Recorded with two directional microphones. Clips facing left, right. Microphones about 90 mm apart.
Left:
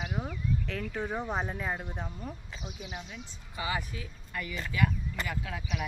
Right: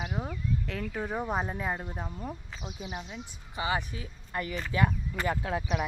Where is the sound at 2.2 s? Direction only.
20° right (ahead or behind); by 5.9 s 35° right (ahead or behind).